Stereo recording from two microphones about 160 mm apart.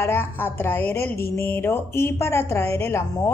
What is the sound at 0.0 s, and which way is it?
Speech, 15° left (ahead or behind).